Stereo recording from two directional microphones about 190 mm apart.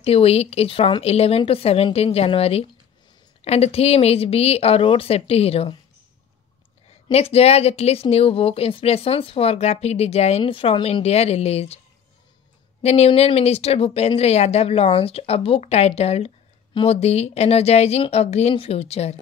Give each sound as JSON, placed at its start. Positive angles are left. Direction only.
{"t": 0.0, "sound": "speech", "side_deg": 30}
{"t": 7.1, "sound": "speech", "side_deg": 30}
{"t": 12.8, "sound": "speech", "side_deg": 35}